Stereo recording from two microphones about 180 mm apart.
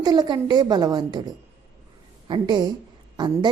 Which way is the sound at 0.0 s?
20° right (ahead or behind).